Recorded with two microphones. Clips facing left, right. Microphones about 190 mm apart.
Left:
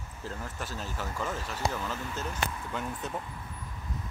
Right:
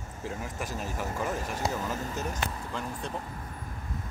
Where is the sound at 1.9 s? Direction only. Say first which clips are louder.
Right 3 dB; 40° right (ahead or behind).